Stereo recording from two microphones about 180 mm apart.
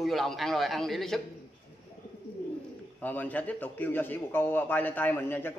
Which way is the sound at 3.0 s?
10° left (ahead or behind).